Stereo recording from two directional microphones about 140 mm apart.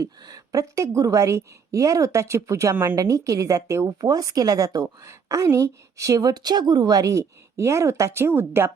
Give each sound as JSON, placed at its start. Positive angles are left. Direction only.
{"t": 0.0, "sound": "a woman's voice", "side_deg": -25}